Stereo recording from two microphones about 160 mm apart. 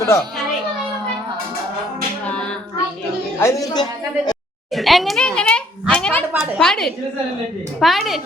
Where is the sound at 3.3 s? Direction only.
20° left (ahead or behind).